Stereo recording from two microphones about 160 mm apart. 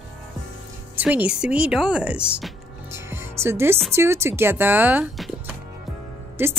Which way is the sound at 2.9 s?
15° right (ahead or behind).